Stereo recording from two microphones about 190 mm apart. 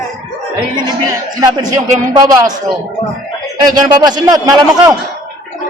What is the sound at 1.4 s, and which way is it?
A man's voice, 20° right (ahead or behind).